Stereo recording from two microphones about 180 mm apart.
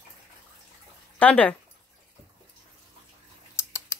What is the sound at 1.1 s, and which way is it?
Speech, 5° left (ahead or behind).